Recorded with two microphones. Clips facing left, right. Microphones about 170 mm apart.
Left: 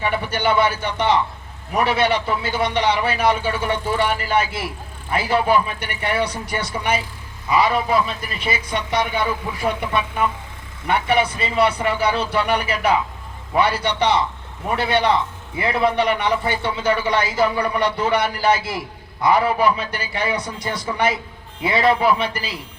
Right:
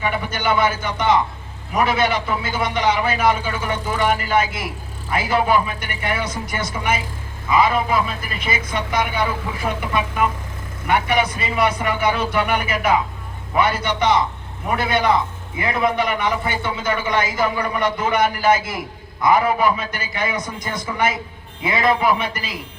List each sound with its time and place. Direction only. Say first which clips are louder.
0.0 s a man's voice: left 1 dB; 35° left (ahead or behind)
10.8 s a man's voice: even; 30° left (ahead or behind)